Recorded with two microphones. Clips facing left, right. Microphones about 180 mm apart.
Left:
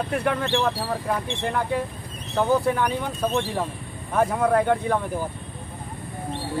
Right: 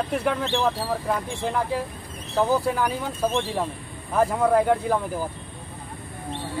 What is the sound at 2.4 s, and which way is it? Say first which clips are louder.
Speech: left 1 dB; 5° right (ahead or behind).